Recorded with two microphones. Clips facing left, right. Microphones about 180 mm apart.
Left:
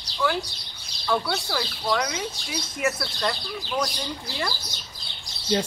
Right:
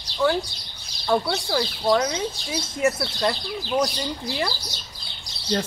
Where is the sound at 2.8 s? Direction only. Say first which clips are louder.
Right 4 dB; 20° right (ahead or behind).